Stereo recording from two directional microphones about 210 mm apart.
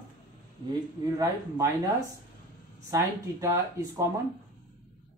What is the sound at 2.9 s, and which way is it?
Speech, 15° right (ahead or behind).